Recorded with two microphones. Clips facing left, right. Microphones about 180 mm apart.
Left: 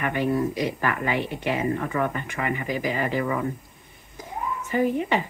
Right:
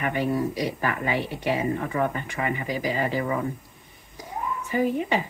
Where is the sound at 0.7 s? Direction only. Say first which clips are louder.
Left 1 dB; 15° right (ahead or behind).